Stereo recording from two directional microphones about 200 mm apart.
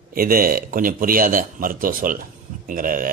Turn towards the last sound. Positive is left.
turn(degrees=-45)  # may be behind; listen again after turning